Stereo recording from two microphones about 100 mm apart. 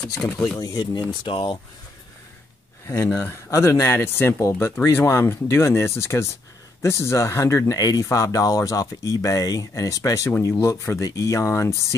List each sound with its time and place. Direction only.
0.6 s speech: 40° left (ahead or behind)
1.2 s speech: 60° left (ahead or behind)
2.9 s speech: 25° left (ahead or behind)